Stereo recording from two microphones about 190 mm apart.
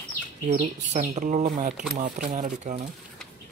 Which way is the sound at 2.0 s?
40° right (ahead or behind).